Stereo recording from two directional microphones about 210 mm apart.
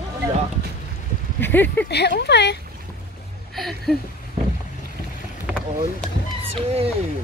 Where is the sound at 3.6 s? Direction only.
Centre (ahead or behind).